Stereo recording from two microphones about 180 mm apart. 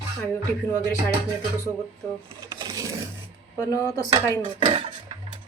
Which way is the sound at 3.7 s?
20° left (ahead or behind).